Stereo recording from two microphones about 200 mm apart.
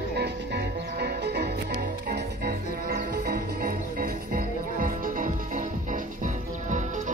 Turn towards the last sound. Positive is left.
turn(degrees=-40)  # may be behind; listen again after turning